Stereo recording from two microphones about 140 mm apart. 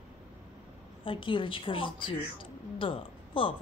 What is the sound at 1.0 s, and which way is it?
A woman's voice, 35° left (ahead or behind).